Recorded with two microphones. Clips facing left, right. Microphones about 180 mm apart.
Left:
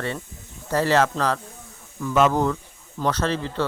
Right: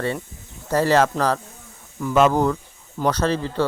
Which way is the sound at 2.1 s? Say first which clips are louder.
Right 2 dB; 40° right (ahead or behind).